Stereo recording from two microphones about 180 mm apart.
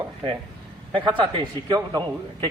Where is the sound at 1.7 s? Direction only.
25° right (ahead or behind).